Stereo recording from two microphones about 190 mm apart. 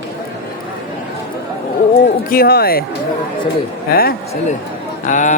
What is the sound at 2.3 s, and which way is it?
Speech, 55° left (ahead or behind).